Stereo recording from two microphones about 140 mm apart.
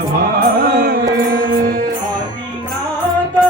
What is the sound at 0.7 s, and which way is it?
Music, 90° right.